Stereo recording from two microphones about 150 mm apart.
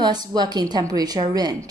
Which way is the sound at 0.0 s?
30° right (ahead or behind).